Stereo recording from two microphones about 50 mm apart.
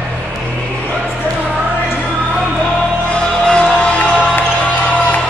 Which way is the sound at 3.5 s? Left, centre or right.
Left.